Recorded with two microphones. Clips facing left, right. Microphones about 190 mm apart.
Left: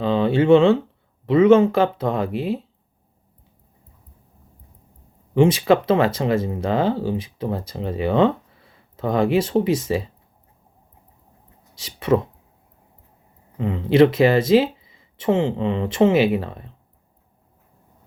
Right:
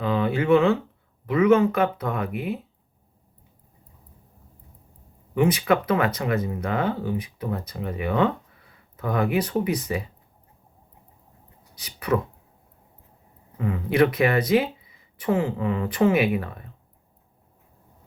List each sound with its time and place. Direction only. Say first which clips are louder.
0.0 s speech: left 5 dB; 30° left (ahead or behind)
5.3 s speech: left 5 dB; 30° left (ahead or behind)
11.7 s speech: left 5 dB; 25° left (ahead or behind)
13.6 s speech: left 5 dB; 25° left (ahead or behind)